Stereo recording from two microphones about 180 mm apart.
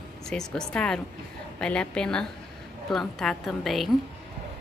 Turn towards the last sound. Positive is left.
turn(degrees=0)  # may be behind; listen again after turning